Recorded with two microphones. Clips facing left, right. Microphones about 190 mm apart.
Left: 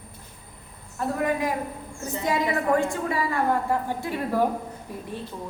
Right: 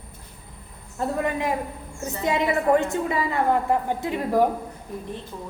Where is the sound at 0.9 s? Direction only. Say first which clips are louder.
Even; 25° right (ahead or behind).